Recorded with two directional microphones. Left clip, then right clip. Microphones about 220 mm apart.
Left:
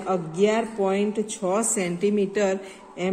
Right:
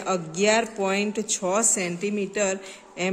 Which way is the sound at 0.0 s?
25° right (ahead or behind).